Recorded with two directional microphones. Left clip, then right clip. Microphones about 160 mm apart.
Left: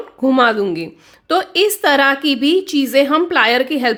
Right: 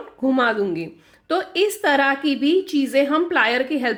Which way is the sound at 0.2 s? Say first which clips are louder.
Left 6 dB; 25° left (ahead or behind).